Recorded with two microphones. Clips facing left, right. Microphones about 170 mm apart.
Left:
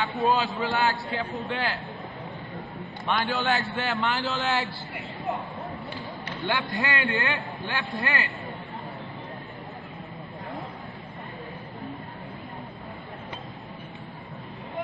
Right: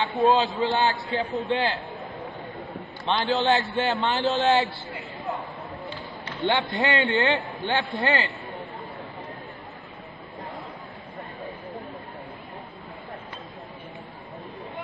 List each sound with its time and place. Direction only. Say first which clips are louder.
0.0 s a man's voice: right 4 dB; 25° right (ahead or behind)
3.1 s a man's voice: right 4 dB; 25° right (ahead or behind)
6.4 s a man's voice: right 5 dB; 25° right (ahead or behind)